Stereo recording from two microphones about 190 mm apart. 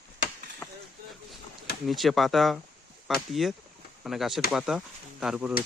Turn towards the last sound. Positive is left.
turn(degrees=-5)  # may be behind; listen again after turning